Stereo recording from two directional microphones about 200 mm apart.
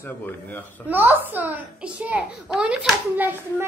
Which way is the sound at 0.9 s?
10° right (ahead or behind).